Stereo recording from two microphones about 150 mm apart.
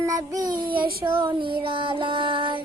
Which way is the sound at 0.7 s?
90° right.